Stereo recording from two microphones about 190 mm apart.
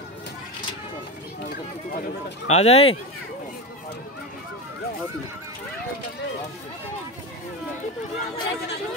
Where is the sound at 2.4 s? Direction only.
35° left (ahead or behind).